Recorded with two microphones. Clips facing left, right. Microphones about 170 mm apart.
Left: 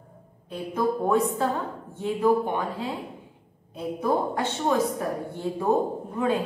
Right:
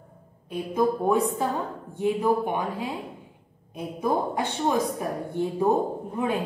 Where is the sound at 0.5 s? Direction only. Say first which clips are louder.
Right 2 dB; 15° right (ahead or behind).